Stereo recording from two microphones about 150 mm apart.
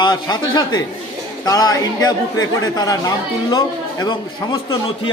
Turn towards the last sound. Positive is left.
turn(degrees=30)  # may be behind; listen again after turning